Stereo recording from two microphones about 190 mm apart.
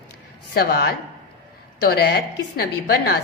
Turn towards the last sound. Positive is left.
turn(degrees=55)  # may be behind; listen again after turning